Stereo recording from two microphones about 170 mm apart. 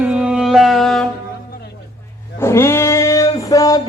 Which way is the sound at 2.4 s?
15° left (ahead or behind).